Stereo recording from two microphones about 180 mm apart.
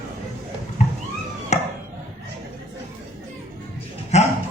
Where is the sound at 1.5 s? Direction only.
40° left (ahead or behind).